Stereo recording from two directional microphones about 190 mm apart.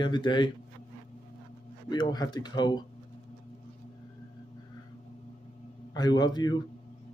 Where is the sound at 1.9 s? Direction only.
20° left (ahead or behind).